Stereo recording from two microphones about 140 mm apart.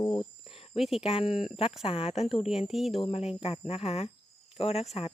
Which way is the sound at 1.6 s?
45° left (ahead or behind).